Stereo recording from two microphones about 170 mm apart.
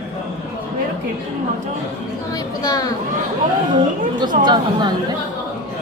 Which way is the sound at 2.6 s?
20° left (ahead or behind).